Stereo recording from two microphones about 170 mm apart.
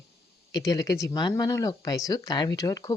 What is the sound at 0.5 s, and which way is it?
A woman's voice, 20° left (ahead or behind).